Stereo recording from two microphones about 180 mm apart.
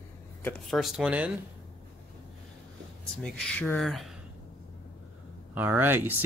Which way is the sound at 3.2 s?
5° left (ahead or behind).